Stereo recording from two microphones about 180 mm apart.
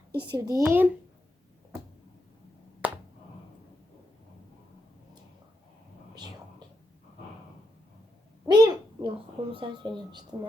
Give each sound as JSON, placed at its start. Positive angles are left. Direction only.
{"t": 0.2, "sound": "speech", "side_deg": -20}
{"t": 0.6, "sound": "a child's voice", "side_deg": -10}
{"t": 2.8, "sound": "finger snapping", "side_deg": -10}
{"t": 8.4, "sound": "babbling", "side_deg": -20}
{"t": 10.3, "sound": "speech", "side_deg": -25}